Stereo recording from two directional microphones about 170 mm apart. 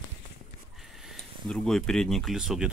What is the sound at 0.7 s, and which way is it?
Speech, centre (ahead or behind).